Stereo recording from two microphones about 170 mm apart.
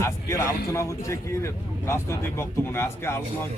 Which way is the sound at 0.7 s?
15° left (ahead or behind).